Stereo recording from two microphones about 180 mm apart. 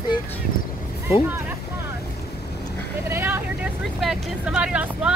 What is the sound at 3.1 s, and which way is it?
Vehicle, 10° right (ahead or behind).